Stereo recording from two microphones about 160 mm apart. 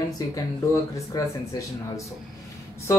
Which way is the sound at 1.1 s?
25° left (ahead or behind).